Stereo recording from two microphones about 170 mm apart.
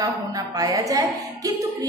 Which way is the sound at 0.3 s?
20° right (ahead or behind).